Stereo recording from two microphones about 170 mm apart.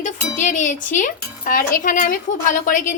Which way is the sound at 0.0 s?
45° left (ahead or behind).